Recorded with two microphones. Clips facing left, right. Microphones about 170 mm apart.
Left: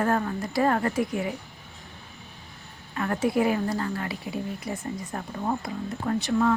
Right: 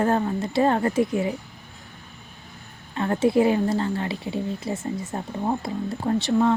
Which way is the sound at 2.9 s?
25° right (ahead or behind).